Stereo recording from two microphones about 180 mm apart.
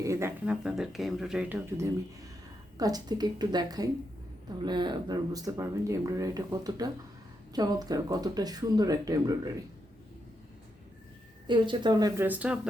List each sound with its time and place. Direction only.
0.0 s speech: 15° right (ahead or behind)
2.7 s speech: 20° right (ahead or behind)
11.4 s speech: 25° right (ahead or behind); by 12.5 s 10° right (ahead or behind)